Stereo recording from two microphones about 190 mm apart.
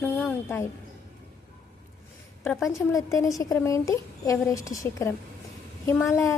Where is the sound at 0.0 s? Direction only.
5° left (ahead or behind).